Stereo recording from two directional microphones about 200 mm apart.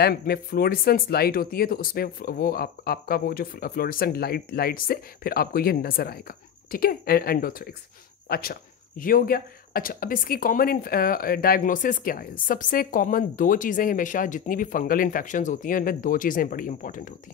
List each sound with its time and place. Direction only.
0.0 s speech: 50° left (ahead or behind)